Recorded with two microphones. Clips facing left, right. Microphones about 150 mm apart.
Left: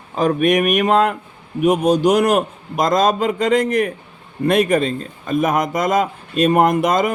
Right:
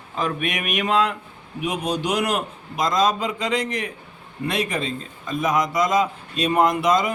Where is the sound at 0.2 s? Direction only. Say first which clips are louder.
Left 10 dB; 45° left (ahead or behind).